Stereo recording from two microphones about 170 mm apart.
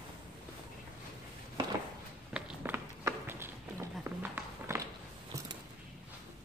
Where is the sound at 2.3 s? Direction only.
10° right (ahead or behind).